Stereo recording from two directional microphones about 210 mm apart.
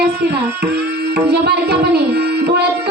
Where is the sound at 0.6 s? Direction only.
50° right (ahead or behind).